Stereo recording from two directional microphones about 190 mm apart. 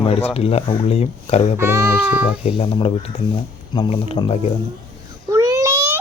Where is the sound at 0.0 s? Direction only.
30° left (ahead or behind).